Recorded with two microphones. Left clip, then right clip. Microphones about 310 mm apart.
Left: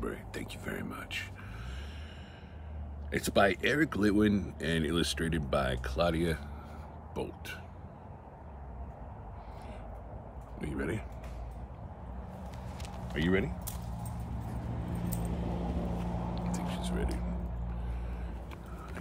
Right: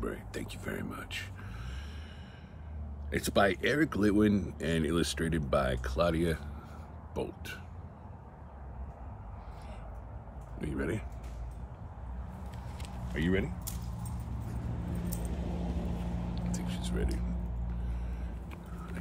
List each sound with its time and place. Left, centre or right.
0.0 s speech: centre
3.1 s speech: centre
10.6 s speech: centre
13.1 s speech: centre
14.9 s vehicle: left
16.3 s a sound: centre